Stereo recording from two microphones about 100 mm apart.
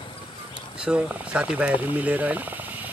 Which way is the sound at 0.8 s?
10° right (ahead or behind).